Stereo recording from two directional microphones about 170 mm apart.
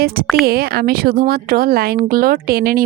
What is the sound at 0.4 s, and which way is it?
Speech, 60° right (ahead or behind).